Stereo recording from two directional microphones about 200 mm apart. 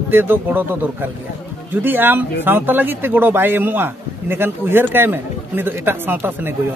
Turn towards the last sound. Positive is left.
turn(degrees=-10)  # may be behind; listen again after turning